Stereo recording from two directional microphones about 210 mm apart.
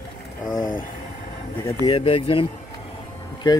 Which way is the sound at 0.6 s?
40° left (ahead or behind).